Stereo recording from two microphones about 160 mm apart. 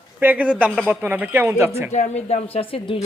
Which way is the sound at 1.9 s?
45° left (ahead or behind).